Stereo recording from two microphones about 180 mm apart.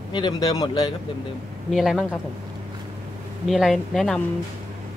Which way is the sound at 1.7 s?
Centre (ahead or behind).